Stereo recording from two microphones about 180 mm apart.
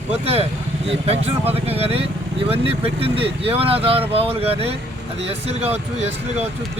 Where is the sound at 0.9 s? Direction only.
35° right (ahead or behind).